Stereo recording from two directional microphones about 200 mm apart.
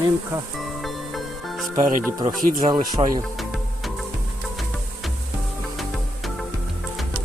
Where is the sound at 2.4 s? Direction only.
40° right (ahead or behind).